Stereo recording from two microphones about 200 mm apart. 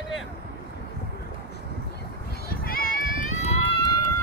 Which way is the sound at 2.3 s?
50° left (ahead or behind).